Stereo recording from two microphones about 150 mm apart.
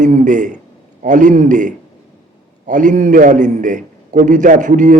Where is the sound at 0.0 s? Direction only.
55° right (ahead or behind).